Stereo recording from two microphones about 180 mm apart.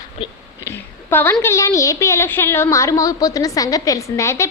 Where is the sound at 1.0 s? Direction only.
10° left (ahead or behind).